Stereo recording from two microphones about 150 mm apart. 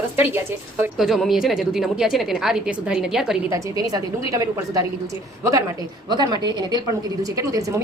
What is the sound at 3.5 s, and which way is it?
A woman's voice, 25° right (ahead or behind).